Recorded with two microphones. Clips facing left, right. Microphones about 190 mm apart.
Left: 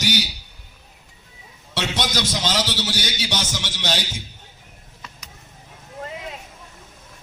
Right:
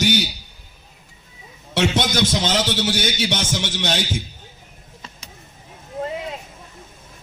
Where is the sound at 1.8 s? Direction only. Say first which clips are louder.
Right 6 dB; 50° right (ahead or behind).